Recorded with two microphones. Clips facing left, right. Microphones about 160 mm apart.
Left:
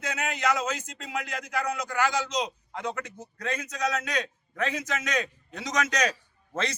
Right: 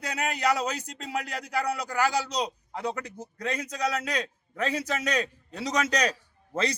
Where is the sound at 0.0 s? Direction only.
35° right (ahead or behind).